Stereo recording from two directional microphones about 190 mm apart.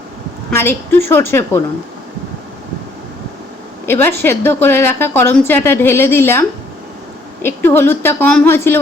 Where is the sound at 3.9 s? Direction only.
10° left (ahead or behind).